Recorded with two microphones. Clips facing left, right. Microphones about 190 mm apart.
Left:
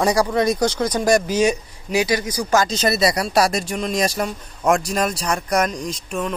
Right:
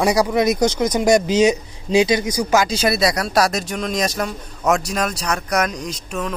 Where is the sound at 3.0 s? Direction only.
5° left (ahead or behind).